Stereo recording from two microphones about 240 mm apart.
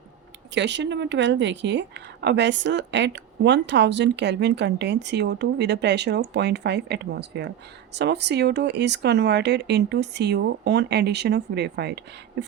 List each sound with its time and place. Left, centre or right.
0.5 s speech: right